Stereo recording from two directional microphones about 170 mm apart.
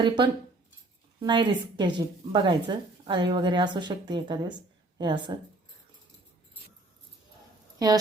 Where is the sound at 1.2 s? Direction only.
25° right (ahead or behind).